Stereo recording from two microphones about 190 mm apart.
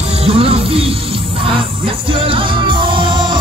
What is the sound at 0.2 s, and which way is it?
Music, 30° right (ahead or behind).